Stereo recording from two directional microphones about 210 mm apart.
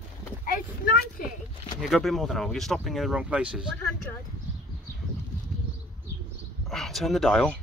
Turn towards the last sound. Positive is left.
turn(degrees=5)  # may be behind; listen again after turning